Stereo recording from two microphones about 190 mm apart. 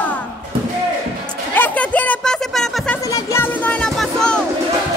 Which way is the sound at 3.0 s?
15° left (ahead or behind).